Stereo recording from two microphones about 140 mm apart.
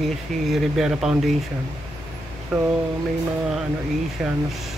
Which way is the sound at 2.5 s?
Centre (ahead or behind).